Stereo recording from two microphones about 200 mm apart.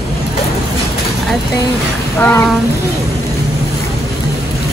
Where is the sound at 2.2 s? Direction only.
10° left (ahead or behind).